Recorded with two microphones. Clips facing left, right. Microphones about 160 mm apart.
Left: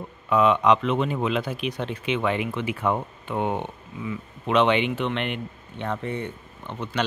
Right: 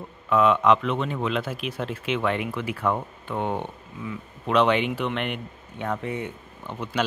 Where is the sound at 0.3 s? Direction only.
Centre (ahead or behind).